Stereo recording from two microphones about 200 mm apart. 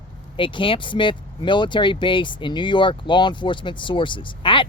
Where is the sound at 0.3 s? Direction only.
25° left (ahead or behind).